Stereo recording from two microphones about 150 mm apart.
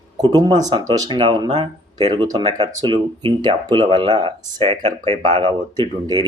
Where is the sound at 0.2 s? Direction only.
35° right (ahead or behind).